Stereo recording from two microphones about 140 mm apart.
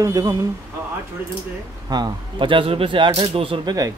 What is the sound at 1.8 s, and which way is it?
Speech, 30° right (ahead or behind).